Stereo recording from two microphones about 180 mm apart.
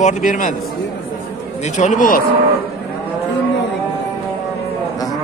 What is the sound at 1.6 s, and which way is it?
Speech, 40° left (ahead or behind).